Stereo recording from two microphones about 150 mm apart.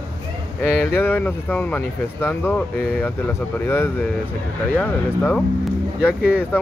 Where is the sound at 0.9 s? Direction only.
15° left (ahead or behind).